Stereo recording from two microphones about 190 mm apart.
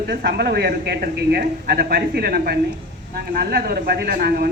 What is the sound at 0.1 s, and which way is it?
A woman's voice, 60° right (ahead or behind).